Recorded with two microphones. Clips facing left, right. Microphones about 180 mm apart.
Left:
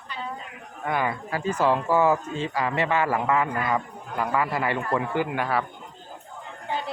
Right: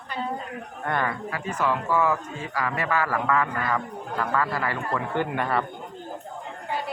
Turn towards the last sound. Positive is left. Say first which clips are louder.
# even
turn(degrees=0)  # may be behind; listen again after turning